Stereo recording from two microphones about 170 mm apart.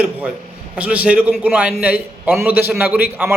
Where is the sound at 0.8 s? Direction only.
5° right (ahead or behind).